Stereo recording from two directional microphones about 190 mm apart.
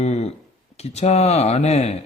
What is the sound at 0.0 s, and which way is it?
Speech, 35° left (ahead or behind).